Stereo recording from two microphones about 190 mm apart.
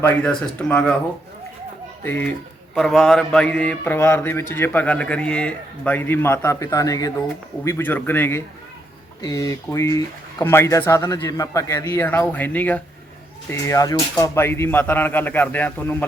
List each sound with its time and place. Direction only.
0.0 s speech: 5° left (ahead or behind)
2.0 s speech: 10° left (ahead or behind)